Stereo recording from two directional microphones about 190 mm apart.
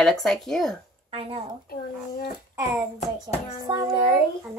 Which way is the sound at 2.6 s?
15° right (ahead or behind).